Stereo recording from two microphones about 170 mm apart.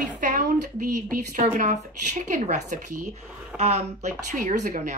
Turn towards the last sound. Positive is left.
turn(degrees=-45)  # may be behind; listen again after turning